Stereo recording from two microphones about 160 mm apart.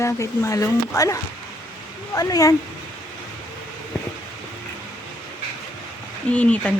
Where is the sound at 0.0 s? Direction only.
20° left (ahead or behind).